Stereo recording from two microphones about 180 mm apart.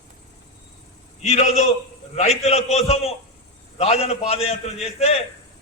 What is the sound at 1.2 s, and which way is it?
A man's voice, 40° left (ahead or behind).